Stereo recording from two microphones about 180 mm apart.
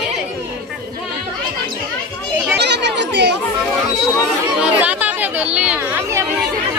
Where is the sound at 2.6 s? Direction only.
75° right (ahead or behind).